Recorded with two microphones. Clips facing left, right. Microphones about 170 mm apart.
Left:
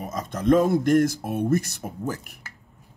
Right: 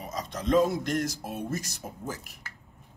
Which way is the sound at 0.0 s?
50° left (ahead or behind).